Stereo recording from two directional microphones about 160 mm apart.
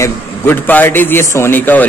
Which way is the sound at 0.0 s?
10° left (ahead or behind).